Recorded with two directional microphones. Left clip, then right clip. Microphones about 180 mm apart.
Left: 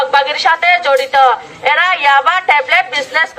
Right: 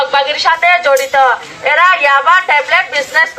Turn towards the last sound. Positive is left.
turn(degrees=35)  # may be behind; listen again after turning